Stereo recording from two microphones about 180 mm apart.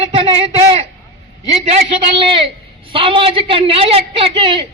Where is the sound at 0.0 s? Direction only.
30° right (ahead or behind).